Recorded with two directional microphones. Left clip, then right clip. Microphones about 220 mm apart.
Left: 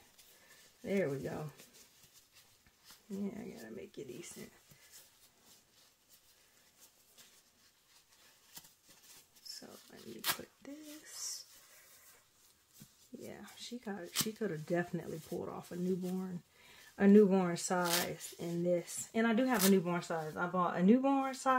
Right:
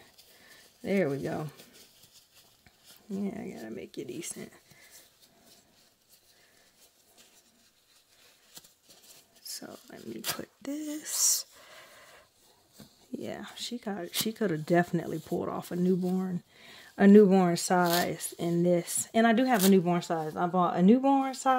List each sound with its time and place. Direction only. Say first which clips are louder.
0.8 s speech: right 7 dB; 55° right (ahead or behind)
3.2 s speech: right 7 dB; 55° right (ahead or behind)
8.5 s a sound: right 4 dB; 10° right (ahead or behind)
9.5 s a sound: right 8 dB; 55° right (ahead or behind)
10.6 s speech: right 14 dB; 55° right (ahead or behind)
13.2 s speech: right 11 dB; 55° right (ahead or behind)